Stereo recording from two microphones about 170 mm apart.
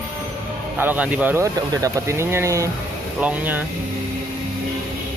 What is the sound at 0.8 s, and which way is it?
Speech, 10° right (ahead or behind).